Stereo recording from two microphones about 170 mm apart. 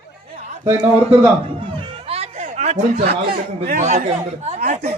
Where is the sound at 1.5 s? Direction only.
30° right (ahead or behind); by 4.0 s 45° right (ahead or behind).